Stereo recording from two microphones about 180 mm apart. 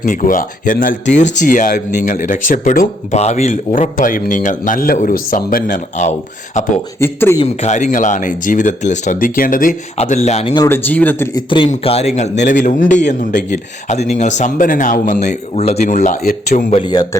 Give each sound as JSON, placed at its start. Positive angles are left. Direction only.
{"t": 0.0, "sound": "speech", "side_deg": 45}
{"t": 7.0, "sound": "speech", "side_deg": 15}
{"t": 7.4, "sound": "speech", "side_deg": 40}
{"t": 10.7, "sound": "speech", "side_deg": 10}
{"t": 11.3, "sound": "speech", "side_deg": 30}
{"t": 16.7, "sound": "speech", "side_deg": 25}